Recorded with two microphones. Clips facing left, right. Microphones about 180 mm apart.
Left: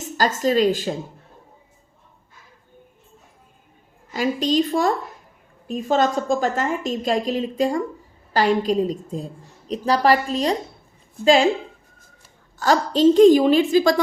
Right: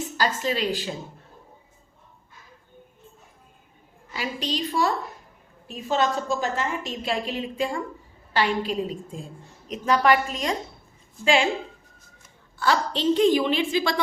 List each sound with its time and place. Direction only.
0.0 s a woman's voice: 45° left (ahead or behind)
4.1 s a woman's voice: 45° left (ahead or behind)
11.2 s speech: 60° left (ahead or behind)
12.2 s a woman's voice: 40° left (ahead or behind)